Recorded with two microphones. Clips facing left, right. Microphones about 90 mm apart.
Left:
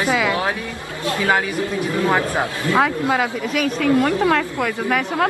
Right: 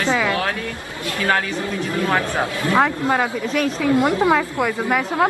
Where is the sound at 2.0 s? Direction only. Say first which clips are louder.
Left 1 dB; 20° left (ahead or behind).